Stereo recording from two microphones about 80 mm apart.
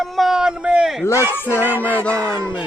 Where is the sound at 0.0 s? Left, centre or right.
Centre.